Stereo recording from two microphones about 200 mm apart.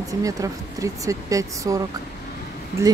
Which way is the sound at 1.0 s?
15° right (ahead or behind).